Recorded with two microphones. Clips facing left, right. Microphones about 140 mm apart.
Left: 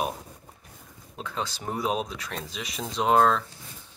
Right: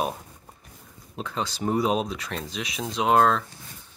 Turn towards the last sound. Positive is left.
turn(degrees=0)  # may be behind; listen again after turning